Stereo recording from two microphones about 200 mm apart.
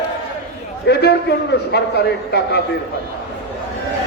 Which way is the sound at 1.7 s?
55° left (ahead or behind).